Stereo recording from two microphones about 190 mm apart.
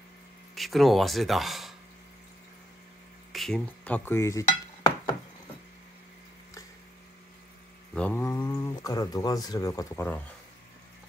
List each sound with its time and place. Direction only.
0.6 s speech: centre (ahead or behind)
3.3 s dishes: 5° left (ahead or behind); by 5.1 s 20° left (ahead or behind)
7.9 s speech: 5° left (ahead or behind)